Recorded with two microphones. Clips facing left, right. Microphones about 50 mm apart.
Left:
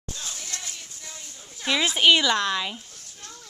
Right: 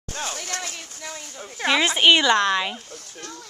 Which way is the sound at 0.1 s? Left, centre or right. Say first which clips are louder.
Right 7 dB; right.